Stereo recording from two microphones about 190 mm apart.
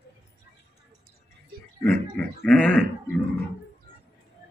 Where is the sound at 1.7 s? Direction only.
5° left (ahead or behind).